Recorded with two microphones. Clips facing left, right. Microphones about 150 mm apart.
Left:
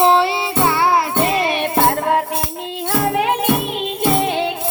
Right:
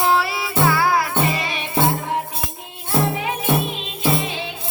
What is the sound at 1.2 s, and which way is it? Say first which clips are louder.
Music: left 6 dB; 60° left (ahead or behind).